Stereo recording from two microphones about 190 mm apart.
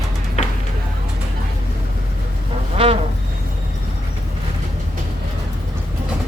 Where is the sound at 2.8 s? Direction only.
25° right (ahead or behind).